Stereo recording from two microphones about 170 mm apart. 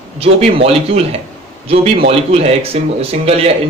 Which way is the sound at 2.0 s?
35° right (ahead or behind).